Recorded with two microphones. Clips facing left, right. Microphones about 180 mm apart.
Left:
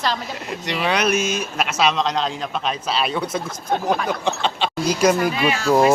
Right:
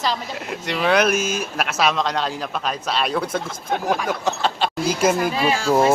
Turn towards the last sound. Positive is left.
turn(degrees=0)  # may be behind; listen again after turning